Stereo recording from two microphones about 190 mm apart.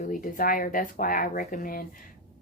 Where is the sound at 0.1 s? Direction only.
45° left (ahead or behind).